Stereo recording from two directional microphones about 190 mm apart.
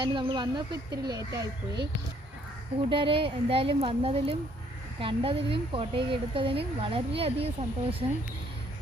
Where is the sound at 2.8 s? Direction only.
25° right (ahead or behind).